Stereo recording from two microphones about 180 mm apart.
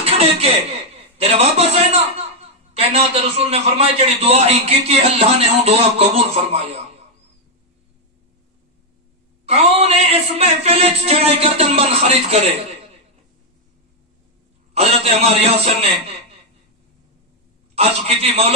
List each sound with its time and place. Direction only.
0.0 s chuckle: 35° right (ahead or behind)
1.1 s a man's voice: 35° right (ahead or behind)
9.5 s a man's voice: 35° right (ahead or behind)
14.7 s a man's voice: 35° right (ahead or behind)
17.7 s a man's voice: 35° right (ahead or behind)